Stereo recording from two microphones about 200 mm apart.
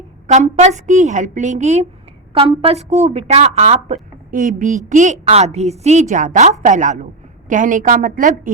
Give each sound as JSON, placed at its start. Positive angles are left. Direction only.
{"t": 0.3, "sound": "a woman's voice", "side_deg": -35}